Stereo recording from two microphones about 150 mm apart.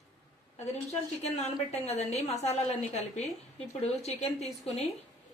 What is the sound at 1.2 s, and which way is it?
A woman's voice, 45° left (ahead or behind).